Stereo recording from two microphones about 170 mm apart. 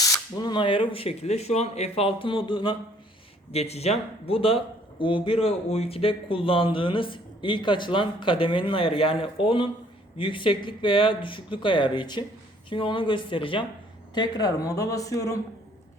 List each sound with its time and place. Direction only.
0.0 s a man's voice: 20° left (ahead or behind)